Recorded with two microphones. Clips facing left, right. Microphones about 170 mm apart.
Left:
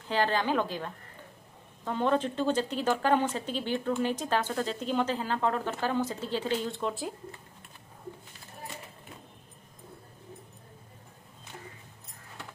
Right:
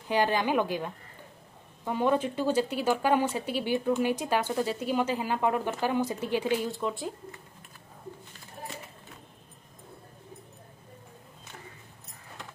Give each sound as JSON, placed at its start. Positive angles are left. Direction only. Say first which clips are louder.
{"t": 0.1, "sound": "speech", "louder": "right 2 dB", "side_deg": -15}